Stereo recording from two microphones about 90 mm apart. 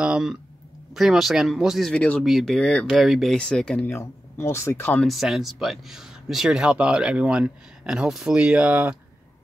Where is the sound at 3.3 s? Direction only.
10° left (ahead or behind).